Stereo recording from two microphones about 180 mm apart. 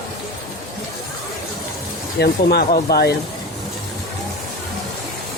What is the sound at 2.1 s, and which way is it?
Speech, 65° left (ahead or behind).